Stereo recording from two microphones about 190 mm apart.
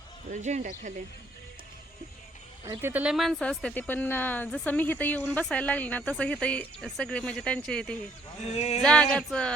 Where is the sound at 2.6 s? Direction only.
10° right (ahead or behind).